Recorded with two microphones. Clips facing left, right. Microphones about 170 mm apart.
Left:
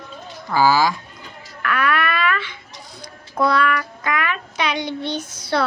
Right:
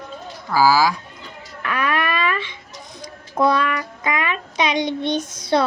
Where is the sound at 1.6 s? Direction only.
20° right (ahead or behind).